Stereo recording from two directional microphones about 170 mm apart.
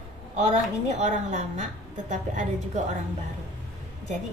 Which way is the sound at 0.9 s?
45° right (ahead or behind).